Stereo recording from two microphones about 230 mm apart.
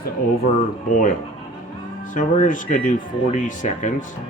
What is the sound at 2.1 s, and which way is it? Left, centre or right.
Speech, left.